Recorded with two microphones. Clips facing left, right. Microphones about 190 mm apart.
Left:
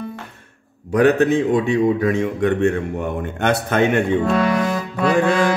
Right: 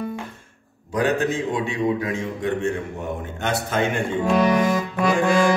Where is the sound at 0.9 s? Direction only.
65° left (ahead or behind).